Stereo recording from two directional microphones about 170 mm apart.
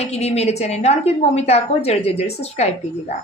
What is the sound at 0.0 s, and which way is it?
A woman's voice, 40° left (ahead or behind).